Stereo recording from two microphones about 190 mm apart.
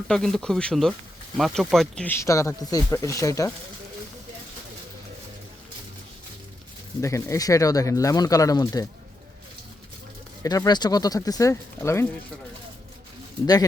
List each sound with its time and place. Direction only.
0.1 s speech: 5° left (ahead or behind)
7.0 s speech: 15° left (ahead or behind)
10.4 s speech: 20° left (ahead or behind)